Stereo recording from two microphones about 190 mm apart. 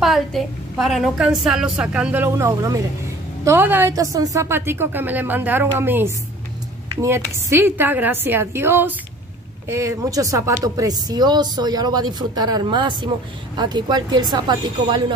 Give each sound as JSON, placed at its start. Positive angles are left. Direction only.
{"t": 0.0, "sound": "a woman's voice", "side_deg": 0}